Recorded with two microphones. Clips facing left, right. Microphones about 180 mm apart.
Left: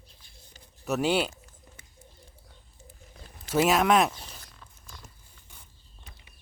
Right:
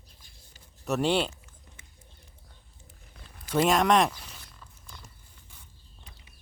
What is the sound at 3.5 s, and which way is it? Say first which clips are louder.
Speech: even; 5° left (ahead or behind).